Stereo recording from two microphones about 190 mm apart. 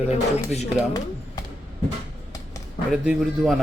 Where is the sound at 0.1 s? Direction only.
35° left (ahead or behind).